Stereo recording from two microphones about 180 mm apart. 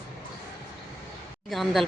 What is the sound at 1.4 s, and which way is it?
Speech, centre (ahead or behind).